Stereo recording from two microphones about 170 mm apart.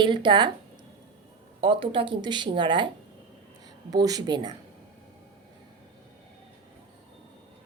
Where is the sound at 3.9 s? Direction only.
20° right (ahead or behind).